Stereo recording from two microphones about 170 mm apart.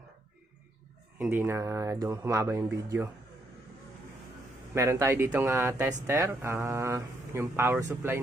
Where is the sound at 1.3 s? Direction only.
15° right (ahead or behind).